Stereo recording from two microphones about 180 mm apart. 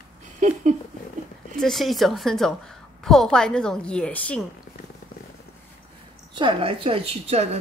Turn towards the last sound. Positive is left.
turn(degrees=-35)  # may be behind; listen again after turning